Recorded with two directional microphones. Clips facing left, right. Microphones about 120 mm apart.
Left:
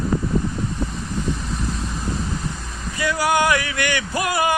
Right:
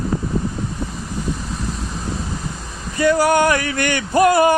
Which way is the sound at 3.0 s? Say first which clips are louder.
Right 5 dB; 45° right (ahead or behind).